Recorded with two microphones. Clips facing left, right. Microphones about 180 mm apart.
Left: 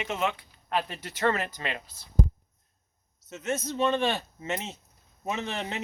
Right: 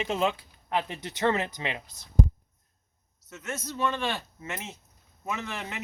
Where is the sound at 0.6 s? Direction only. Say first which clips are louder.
Even; 20° right (ahead or behind).